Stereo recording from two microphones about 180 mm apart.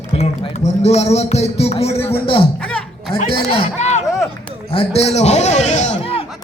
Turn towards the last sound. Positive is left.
turn(degrees=30)  # may be behind; listen again after turning